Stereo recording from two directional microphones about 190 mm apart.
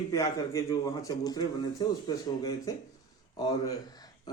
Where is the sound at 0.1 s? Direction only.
20° left (ahead or behind).